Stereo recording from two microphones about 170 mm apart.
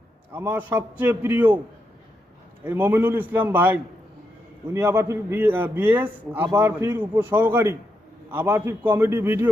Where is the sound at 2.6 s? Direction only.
10° right (ahead or behind).